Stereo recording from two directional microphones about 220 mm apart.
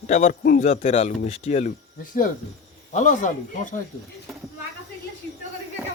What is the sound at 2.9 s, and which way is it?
Speech, 35° left (ahead or behind).